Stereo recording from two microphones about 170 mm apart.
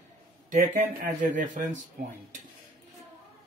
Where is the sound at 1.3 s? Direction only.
50° right (ahead or behind).